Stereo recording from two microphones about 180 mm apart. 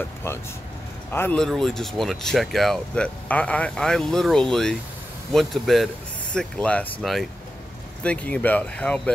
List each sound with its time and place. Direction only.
1.1 s speech: 10° left (ahead or behind)